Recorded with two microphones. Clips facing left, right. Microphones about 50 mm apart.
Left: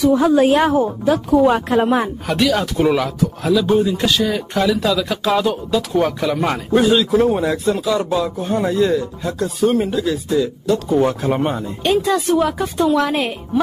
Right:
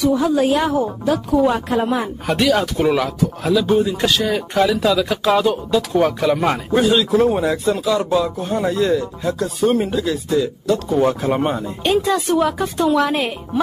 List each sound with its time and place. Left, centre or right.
0.2 s a woman's voice: left
2.2 s speech: centre